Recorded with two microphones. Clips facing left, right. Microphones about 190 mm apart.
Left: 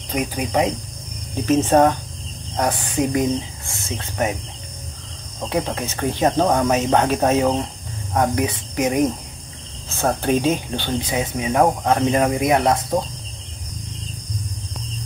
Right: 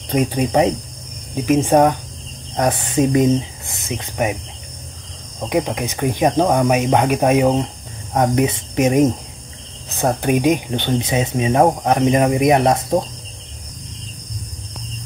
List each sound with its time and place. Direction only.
0.1 s speech: 25° right (ahead or behind)
1.3 s speech: 10° right (ahead or behind)
5.5 s speech: 15° right (ahead or behind)